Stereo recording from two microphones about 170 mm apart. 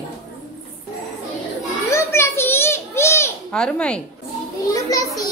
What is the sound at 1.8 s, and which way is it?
Children playing, 15° left (ahead or behind).